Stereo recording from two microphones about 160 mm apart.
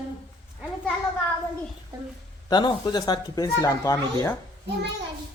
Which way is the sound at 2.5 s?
25° left (ahead or behind).